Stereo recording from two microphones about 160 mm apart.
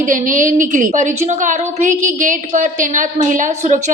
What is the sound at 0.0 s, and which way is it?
A woman's voice, 55° right (ahead or behind).